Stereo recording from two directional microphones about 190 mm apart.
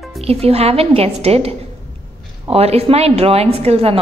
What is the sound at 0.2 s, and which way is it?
A woman's voice, 30° right (ahead or behind).